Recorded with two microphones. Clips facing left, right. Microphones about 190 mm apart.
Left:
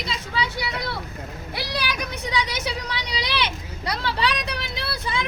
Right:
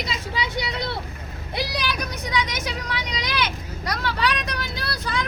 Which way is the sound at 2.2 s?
30° left (ahead or behind).